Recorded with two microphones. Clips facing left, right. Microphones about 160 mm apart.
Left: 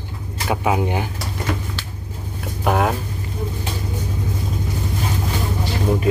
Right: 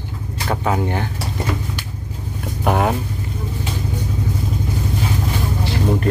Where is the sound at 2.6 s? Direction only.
Centre (ahead or behind).